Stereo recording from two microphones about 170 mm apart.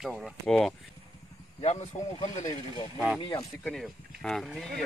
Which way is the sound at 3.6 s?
5° left (ahead or behind).